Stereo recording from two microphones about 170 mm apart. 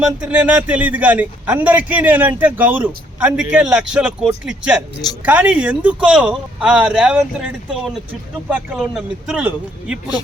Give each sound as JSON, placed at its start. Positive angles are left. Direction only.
{"t": 0.0, "sound": "a man's voice", "side_deg": -5}